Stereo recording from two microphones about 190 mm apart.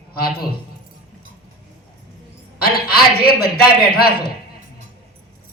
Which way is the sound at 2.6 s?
55° left (ahead or behind).